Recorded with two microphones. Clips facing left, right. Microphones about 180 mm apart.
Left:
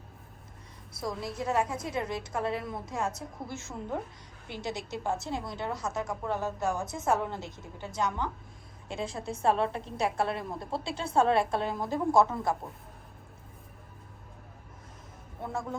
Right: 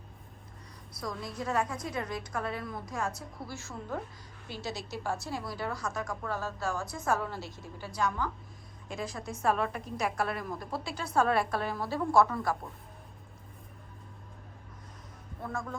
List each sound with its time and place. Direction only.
1.2 s a woman's voice: centre (ahead or behind)
1.9 s a woman's voice: 25° left (ahead or behind)
15.4 s a woman's voice: 25° left (ahead or behind)